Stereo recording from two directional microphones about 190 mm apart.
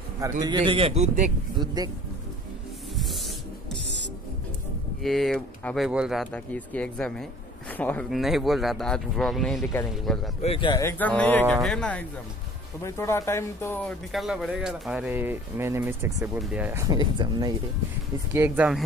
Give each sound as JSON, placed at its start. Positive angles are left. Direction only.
{"t": 0.4, "sound": "speech", "side_deg": -25}
{"t": 1.6, "sound": "speech", "side_deg": -20}
{"t": 5.0, "sound": "speech", "side_deg": 0}
{"t": 10.4, "sound": "speech", "side_deg": 30}
{"t": 10.8, "sound": "speech", "side_deg": 10}
{"t": 13.8, "sound": "speech", "side_deg": 0}
{"t": 18.3, "sound": "speech", "side_deg": -10}